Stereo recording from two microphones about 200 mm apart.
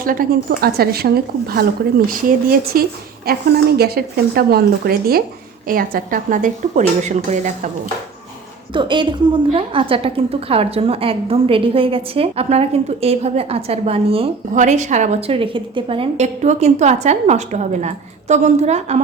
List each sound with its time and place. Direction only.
0.0 s a woman's voice: 45° right (ahead or behind)
8.7 s a woman's voice: 25° right (ahead or behind)